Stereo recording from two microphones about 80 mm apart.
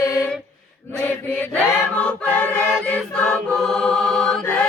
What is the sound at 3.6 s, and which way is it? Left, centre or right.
Mantra, centre.